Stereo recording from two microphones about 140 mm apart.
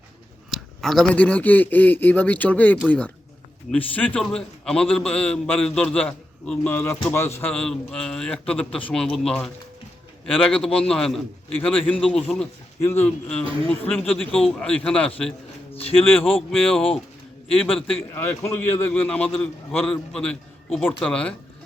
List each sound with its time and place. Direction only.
0.5 s a man's voice: centre (ahead or behind); by 7.5 s 20° left (ahead or behind)
7.5 s a man's voice: 5° left (ahead or behind)
12.8 s a man's voice: 15° left (ahead or behind)
16.5 s a man's voice: 5° left (ahead or behind)
18.1 s a man's voice: 15° left (ahead or behind)